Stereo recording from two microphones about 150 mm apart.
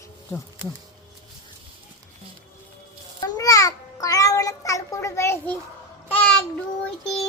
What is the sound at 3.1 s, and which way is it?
Babbling, 25° left (ahead or behind).